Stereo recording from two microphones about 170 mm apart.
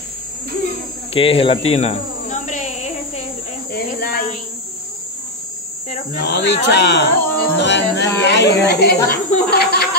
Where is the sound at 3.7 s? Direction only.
60° left (ahead or behind).